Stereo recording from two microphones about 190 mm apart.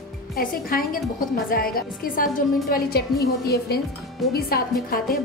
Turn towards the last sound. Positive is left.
turn(degrees=50)  # may be behind; listen again after turning